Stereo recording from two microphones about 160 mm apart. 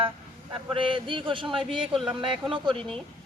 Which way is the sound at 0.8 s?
30° right (ahead or behind).